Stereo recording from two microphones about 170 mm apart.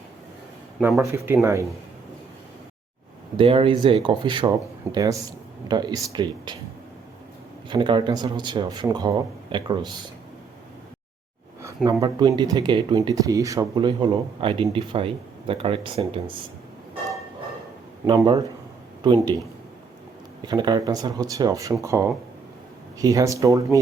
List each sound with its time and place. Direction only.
0.8 s speech: 10° right (ahead or behind)
3.3 s speech: 30° right (ahead or behind)
7.7 s speech: 30° right (ahead or behind)
11.9 s speech: 20° right (ahead or behind)
18.0 s speech: 25° right (ahead or behind)
20.4 s speech: 25° right (ahead or behind)